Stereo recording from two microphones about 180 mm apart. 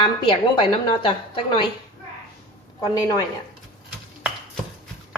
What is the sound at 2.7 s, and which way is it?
Speech, 20° left (ahead or behind).